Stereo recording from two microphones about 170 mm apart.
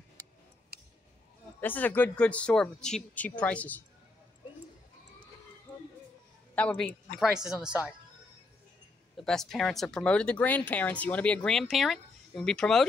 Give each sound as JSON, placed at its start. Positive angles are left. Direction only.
{"t": 0.7, "sound": "a sound", "side_deg": -65}
{"t": 1.6, "sound": "speech", "side_deg": 10}
{"t": 6.5, "sound": "a man's voice", "side_deg": 10}
{"t": 7.2, "sound": "speech", "side_deg": 0}
{"t": 9.1, "sound": "speech", "side_deg": 5}